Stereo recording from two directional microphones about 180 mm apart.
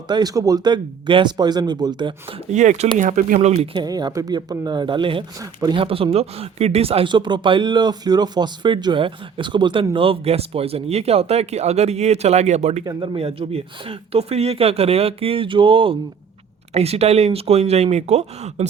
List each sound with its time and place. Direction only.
0.1 s speech: 20° right (ahead or behind)
2.5 s speech: 40° right (ahead or behind)
12.8 s speech: 20° right (ahead or behind)
13.1 s speech: 35° right (ahead or behind)